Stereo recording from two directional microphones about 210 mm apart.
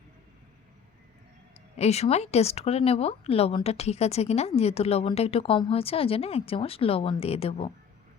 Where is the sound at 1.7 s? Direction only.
30° left (ahead or behind).